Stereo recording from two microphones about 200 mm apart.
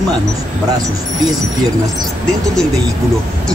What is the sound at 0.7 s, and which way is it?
Speech, 20° right (ahead or behind).